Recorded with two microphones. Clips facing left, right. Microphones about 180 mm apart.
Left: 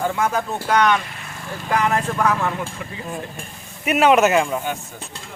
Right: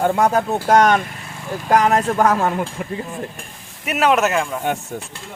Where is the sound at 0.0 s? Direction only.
40° right (ahead or behind).